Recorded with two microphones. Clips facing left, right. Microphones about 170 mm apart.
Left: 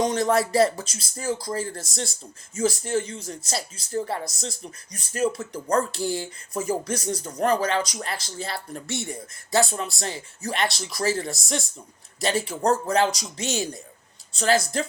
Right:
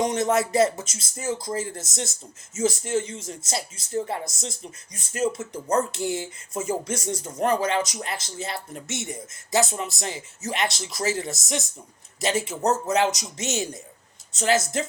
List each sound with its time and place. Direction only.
0.1 s speech: 20° right (ahead or behind)